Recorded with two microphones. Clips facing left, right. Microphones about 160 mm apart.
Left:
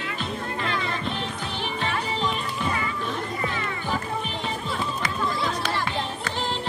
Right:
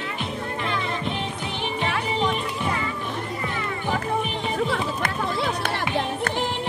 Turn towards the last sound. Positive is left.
turn(degrees=-60)  # may be behind; listen again after turning